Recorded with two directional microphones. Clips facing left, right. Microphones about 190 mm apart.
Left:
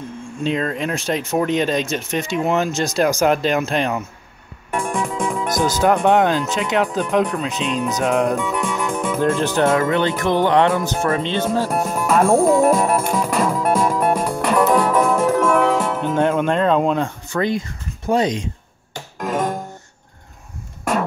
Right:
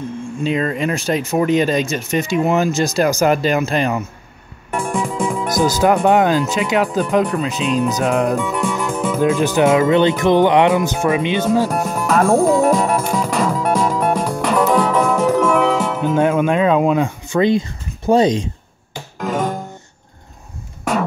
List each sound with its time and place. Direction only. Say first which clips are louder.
0.4 s speech: right 2 dB; 5° right (ahead or behind)
11.7 s music: right 1 dB; 5° left (ahead or behind)
17.3 s speech: right 8 dB; 25° right (ahead or behind)
19.1 s music: right 1 dB; centre (ahead or behind)